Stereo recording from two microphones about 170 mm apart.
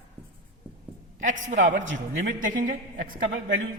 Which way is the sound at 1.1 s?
45° right (ahead or behind).